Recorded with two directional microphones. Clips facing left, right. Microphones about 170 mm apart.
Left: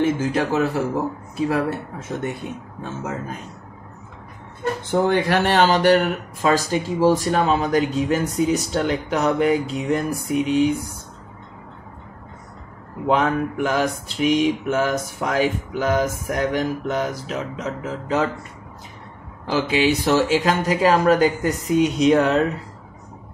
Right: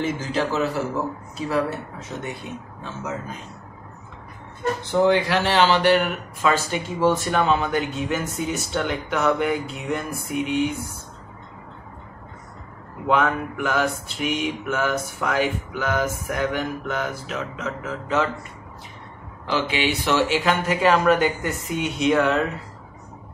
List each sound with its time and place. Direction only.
0.0 s speech: 55° left (ahead or behind)
4.8 s mantra: 50° left (ahead or behind)
13.0 s mantra: 35° left (ahead or behind)
19.8 s mantra: 40° left (ahead or behind)